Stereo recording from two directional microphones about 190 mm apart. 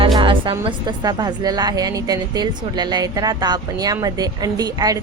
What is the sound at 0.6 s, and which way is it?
A woman's voice, 25° right (ahead or behind).